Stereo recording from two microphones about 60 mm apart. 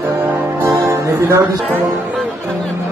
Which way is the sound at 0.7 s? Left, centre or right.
Right.